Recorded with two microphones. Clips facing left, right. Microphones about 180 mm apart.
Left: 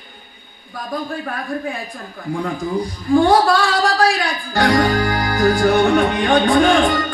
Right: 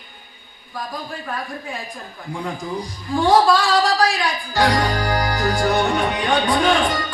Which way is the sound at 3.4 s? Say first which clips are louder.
Even; 50° left (ahead or behind).